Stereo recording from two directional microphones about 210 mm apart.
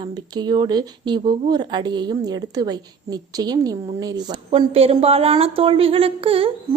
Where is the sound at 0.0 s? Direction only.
20° right (ahead or behind).